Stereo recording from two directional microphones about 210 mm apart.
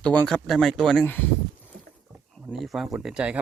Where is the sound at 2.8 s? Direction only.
5° right (ahead or behind).